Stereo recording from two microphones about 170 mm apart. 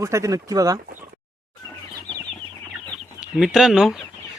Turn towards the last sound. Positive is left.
turn(degrees=0)  # may be behind; listen again after turning